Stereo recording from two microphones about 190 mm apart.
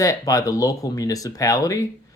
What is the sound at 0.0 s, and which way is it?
Speech, 15° left (ahead or behind).